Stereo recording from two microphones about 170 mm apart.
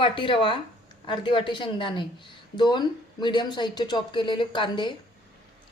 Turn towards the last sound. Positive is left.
turn(degrees=30)  # may be behind; listen again after turning